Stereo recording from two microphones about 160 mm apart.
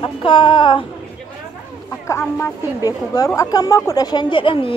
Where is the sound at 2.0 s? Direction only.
15° left (ahead or behind).